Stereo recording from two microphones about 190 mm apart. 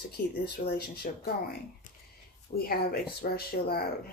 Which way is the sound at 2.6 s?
55° left (ahead or behind).